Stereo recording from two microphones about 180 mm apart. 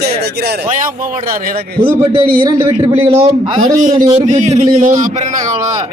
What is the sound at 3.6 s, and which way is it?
Speech, 45° right (ahead or behind).